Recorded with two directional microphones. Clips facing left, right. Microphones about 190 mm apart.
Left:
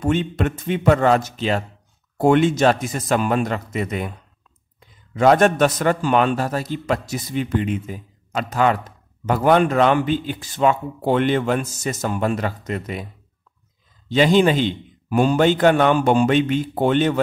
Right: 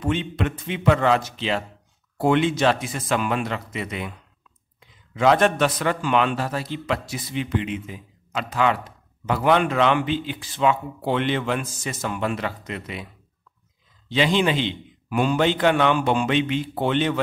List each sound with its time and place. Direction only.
0.0 s a man's voice: 45° left (ahead or behind)